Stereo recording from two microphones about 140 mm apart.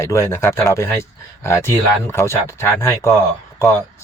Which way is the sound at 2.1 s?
20° left (ahead or behind).